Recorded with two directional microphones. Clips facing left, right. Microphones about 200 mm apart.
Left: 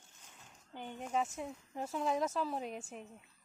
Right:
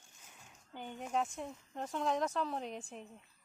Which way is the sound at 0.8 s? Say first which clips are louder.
Even; centre (ahead or behind).